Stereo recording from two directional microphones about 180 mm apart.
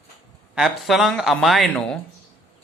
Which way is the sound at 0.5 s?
Centre (ahead or behind).